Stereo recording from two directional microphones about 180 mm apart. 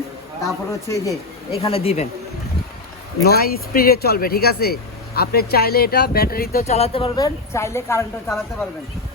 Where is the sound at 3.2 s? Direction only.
60° left (ahead or behind).